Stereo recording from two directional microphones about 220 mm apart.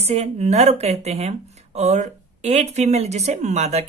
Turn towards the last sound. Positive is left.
turn(degrees=-30)  # may be behind; listen again after turning